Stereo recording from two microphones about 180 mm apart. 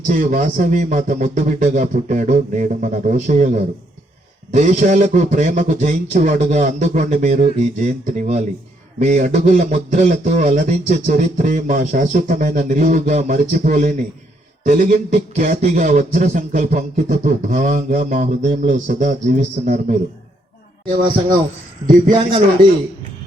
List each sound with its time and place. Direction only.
0.1 s a man's voice: 45° right (ahead or behind)
21.8 s speech: 45° right (ahead or behind)